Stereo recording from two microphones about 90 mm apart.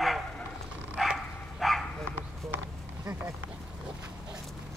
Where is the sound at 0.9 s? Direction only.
5° right (ahead or behind).